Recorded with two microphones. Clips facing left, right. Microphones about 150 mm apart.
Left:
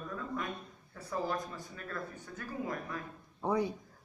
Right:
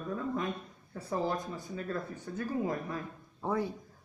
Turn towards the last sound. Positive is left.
turn(degrees=0)  # may be behind; listen again after turning